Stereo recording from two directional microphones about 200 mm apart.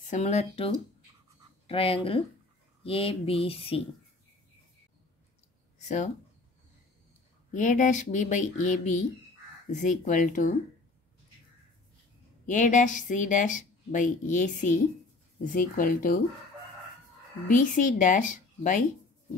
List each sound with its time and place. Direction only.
0.0 s speech: 35° left (ahead or behind)
1.7 s speech: 30° left (ahead or behind)
5.8 s a sound: 35° left (ahead or behind)
7.5 s speech: 40° left (ahead or behind)
12.4 s speech: 40° left (ahead or behind)
17.5 s speech: 40° left (ahead or behind)